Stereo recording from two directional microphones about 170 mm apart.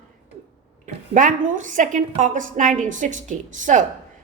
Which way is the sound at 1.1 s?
50° right (ahead or behind).